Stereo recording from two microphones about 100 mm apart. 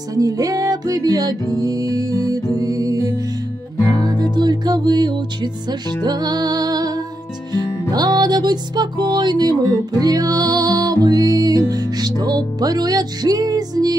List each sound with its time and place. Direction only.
0.1 s music: 35° right (ahead or behind)